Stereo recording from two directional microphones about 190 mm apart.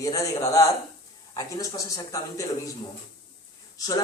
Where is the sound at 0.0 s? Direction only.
20° left (ahead or behind).